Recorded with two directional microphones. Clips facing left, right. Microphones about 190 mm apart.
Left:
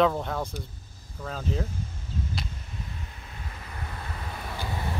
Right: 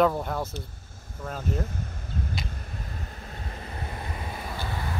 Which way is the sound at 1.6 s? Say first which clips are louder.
Right 1 dB; 60° right (ahead or behind).